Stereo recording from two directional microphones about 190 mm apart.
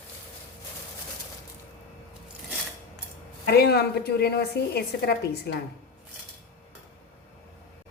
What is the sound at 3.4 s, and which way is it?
A woman's voice, 55° left (ahead or behind).